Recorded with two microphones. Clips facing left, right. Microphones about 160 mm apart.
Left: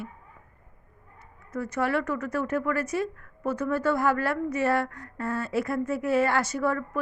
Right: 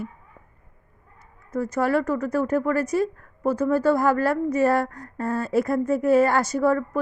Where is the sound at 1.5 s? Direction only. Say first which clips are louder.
Right 5 dB; 40° right (ahead or behind).